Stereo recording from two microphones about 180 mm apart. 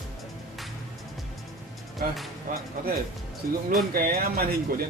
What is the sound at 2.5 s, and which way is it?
Music, 45° right (ahead or behind).